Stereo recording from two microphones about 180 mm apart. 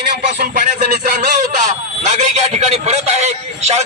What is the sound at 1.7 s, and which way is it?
A man's voice, 40° right (ahead or behind).